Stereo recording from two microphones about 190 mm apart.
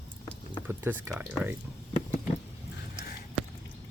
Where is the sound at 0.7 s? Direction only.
10° right (ahead or behind).